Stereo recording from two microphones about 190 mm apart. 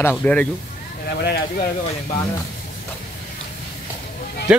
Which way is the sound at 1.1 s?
55° left (ahead or behind).